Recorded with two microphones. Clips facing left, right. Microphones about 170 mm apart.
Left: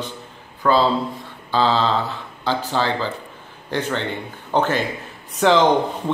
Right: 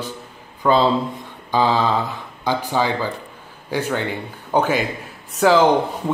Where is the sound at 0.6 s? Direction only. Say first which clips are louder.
Right 1 dB; 20° right (ahead or behind).